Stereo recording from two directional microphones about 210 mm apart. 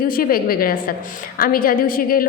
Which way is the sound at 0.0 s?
45° left (ahead or behind).